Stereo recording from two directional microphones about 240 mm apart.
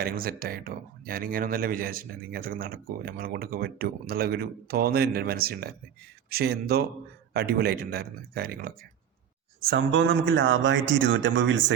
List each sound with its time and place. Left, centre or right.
0.0 s a man's voice: right